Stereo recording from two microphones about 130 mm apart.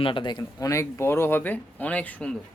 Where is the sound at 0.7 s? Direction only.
20° left (ahead or behind).